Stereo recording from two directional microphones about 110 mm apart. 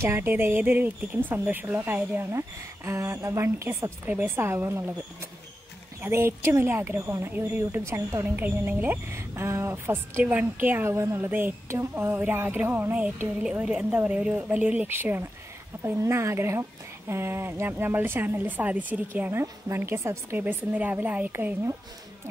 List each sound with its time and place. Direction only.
0.0 s a woman's voice: 20° right (ahead or behind)